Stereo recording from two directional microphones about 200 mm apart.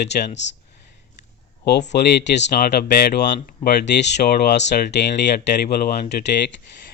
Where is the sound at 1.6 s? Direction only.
55° left (ahead or behind).